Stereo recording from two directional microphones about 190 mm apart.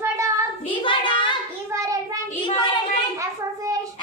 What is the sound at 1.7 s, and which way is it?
Child singing, 15° right (ahead or behind).